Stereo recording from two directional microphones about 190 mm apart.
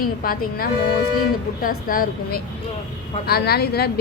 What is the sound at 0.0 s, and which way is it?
A woman's voice, 50° left (ahead or behind).